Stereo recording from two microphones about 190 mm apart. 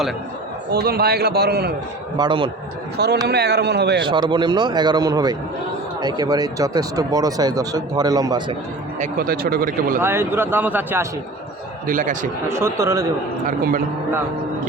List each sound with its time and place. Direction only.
0.7 s a man's voice: 55° right (ahead or behind)
2.1 s speech: 25° right (ahead or behind)
3.2 s a man's voice: 60° right (ahead or behind)
4.0 s speech: 25° right (ahead or behind)
9.0 s speech: 50° right (ahead or behind)
10.0 s speech: 10° right (ahead or behind)
11.9 s speech: 45° right (ahead or behind)
12.5 s speech: 15° right (ahead or behind)